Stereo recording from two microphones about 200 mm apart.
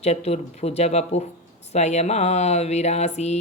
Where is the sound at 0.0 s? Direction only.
30° left (ahead or behind).